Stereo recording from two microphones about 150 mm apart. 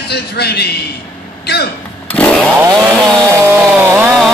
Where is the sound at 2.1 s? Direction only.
10° left (ahead or behind).